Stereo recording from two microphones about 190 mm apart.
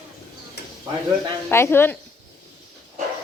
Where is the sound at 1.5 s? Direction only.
10° left (ahead or behind).